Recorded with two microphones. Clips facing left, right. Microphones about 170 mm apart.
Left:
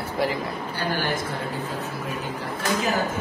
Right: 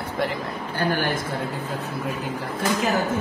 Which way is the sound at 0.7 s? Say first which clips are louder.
Right 4 dB; 50° right (ahead or behind).